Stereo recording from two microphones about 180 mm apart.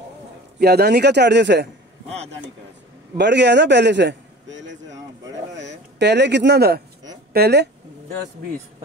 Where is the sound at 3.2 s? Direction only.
70° right (ahead or behind); by 4.9 s 90° right.